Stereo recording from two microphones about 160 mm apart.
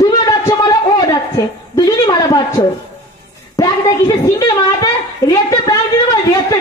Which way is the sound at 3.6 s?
20° left (ahead or behind).